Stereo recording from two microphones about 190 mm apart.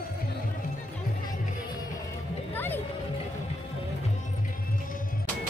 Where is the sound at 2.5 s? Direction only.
10° left (ahead or behind).